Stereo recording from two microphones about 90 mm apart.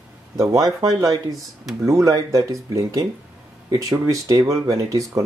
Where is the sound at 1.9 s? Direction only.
35° right (ahead or behind).